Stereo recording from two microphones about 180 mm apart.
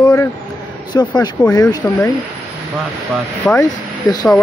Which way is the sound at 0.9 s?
25° left (ahead or behind).